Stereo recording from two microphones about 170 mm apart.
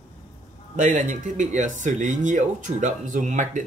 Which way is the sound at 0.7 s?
50° right (ahead or behind).